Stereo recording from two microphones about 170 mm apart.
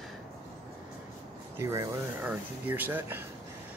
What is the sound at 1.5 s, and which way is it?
Speech, 15° right (ahead or behind).